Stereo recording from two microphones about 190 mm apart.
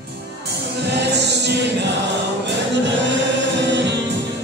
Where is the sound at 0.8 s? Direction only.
65° right (ahead or behind).